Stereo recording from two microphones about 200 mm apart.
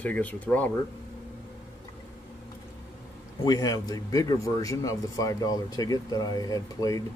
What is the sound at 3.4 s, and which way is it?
Speech, 20° left (ahead or behind).